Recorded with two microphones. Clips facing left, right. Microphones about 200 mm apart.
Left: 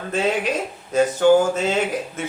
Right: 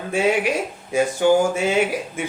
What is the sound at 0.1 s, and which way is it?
Speech, 10° right (ahead or behind).